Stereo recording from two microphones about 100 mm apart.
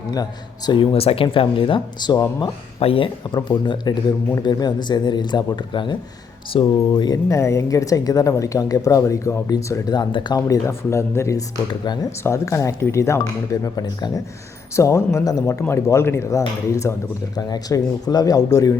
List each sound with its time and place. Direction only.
0.1 s speech: 40° left (ahead or behind)
0.9 s speech: 70° left (ahead or behind); by 2.2 s 45° left (ahead or behind)
2.7 s speech: 65° left (ahead or behind); by 7.2 s 45° left (ahead or behind)
7.3 s speech: 30° left (ahead or behind)
9.9 s speech: 50° left (ahead or behind)
10.3 s speech: 30° left (ahead or behind)
17.3 s speech: 40° left (ahead or behind)